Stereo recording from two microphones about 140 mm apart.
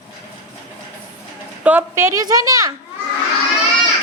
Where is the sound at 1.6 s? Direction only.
10° right (ahead or behind).